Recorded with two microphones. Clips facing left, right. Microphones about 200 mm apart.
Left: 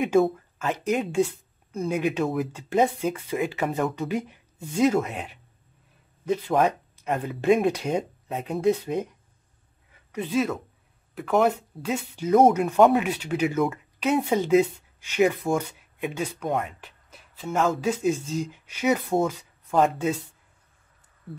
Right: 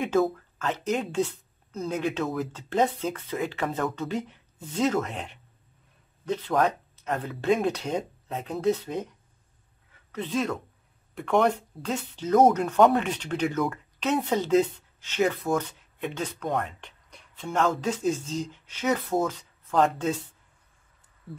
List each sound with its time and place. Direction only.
0.6 s speech: 10° left (ahead or behind)
10.1 s speech: 10° left (ahead or behind)